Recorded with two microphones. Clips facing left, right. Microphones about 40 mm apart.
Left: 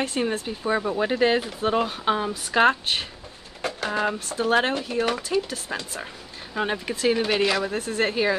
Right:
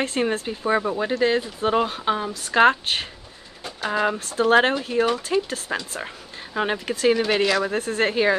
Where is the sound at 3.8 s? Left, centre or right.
Right.